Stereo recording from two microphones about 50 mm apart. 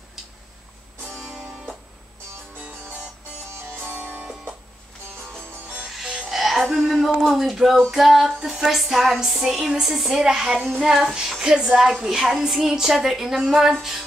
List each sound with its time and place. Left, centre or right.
1.2 s music: centre
3.8 s music: right
5.9 s music: centre
11.2 s a woman's voice: centre